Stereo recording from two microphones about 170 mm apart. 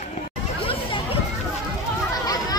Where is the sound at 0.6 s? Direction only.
35° left (ahead or behind).